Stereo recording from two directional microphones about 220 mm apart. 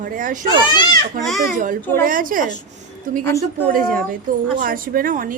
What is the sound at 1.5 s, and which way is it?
Speech, 35° right (ahead or behind).